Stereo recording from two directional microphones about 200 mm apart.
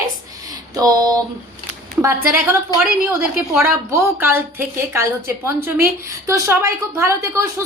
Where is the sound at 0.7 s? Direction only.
20° right (ahead or behind).